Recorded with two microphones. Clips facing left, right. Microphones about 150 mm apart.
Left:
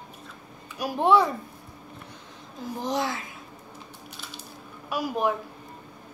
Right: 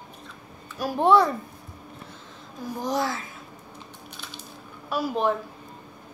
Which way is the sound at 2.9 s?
20° left (ahead or behind).